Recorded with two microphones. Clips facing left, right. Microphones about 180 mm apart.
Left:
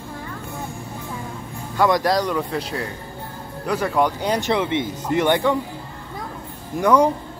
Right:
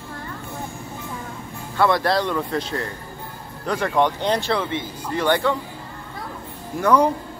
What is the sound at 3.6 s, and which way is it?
Speech, 10° left (ahead or behind).